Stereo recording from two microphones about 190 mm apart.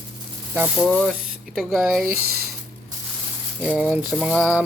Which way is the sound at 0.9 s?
5° left (ahead or behind).